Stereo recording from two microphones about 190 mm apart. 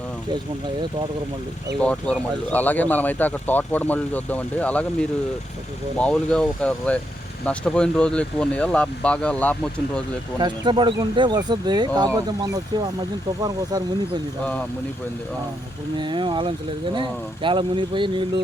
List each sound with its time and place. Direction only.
1.8 s speech: 5° left (ahead or behind)
10.4 s speech: 25° right (ahead or behind)
16.0 s speech: 25° right (ahead or behind)